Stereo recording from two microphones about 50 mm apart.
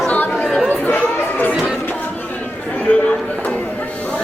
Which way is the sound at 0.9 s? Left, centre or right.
Left.